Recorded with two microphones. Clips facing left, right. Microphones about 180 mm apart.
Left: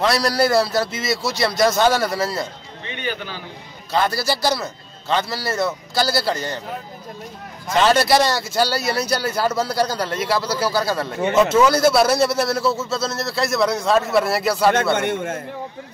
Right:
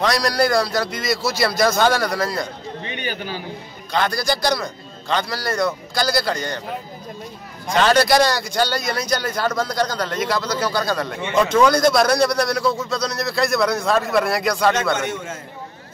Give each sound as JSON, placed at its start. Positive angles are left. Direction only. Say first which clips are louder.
{"t": 0.0, "sound": "a man's voice", "louder": "left 1 dB", "side_deg": 5}
{"t": 3.0, "sound": "a man's voice", "louder": "left 2 dB", "side_deg": -10}
{"t": 3.9, "sound": "a man's voice", "louder": "left 1 dB", "side_deg": 5}
{"t": 7.7, "sound": "a man's voice", "louder": "even", "side_deg": 0}
{"t": 15.0, "sound": "a man's voice", "louder": "left 4 dB", "side_deg": 55}